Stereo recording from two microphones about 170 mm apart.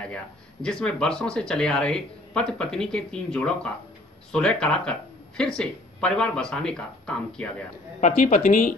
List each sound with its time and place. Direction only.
0.0 s speech: 5° left (ahead or behind)
8.0 s speech: 55° left (ahead or behind)